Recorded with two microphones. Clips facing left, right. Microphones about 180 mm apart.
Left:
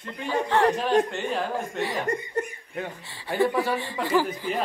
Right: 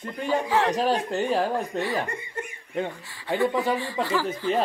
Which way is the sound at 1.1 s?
35° right (ahead or behind).